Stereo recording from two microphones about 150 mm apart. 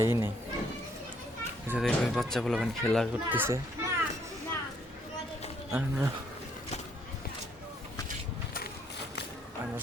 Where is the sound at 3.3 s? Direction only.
15° right (ahead or behind).